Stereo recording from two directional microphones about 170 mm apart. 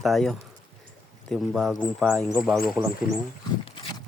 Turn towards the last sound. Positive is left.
turn(degrees=30)  # may be behind; listen again after turning